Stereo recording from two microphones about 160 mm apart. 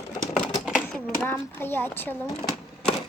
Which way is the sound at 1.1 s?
15° left (ahead or behind).